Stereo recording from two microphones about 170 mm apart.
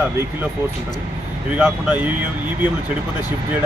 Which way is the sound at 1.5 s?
5° right (ahead or behind).